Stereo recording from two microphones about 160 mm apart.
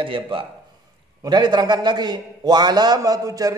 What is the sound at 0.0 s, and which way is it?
A man's voice, 30° right (ahead or behind).